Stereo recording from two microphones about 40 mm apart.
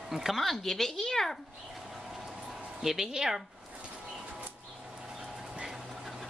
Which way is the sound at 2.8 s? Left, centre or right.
Centre.